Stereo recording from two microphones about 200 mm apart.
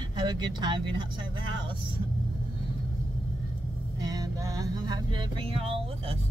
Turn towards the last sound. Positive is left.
turn(degrees=-30)  # may be behind; listen again after turning